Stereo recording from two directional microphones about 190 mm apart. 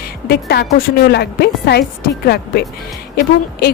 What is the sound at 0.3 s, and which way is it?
A woman's voice, 55° left (ahead or behind).